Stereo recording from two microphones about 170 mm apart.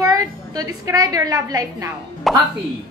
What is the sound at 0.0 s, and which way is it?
A woman's voice, 20° right (ahead or behind).